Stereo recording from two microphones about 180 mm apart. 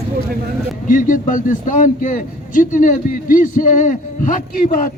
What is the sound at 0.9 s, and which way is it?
A man's voice, 45° left (ahead or behind).